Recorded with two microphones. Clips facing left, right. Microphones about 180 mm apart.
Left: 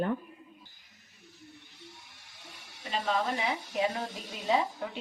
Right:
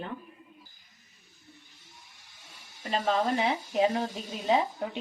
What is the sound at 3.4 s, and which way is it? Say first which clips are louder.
Speech: right 5 dB; 25° right (ahead or behind).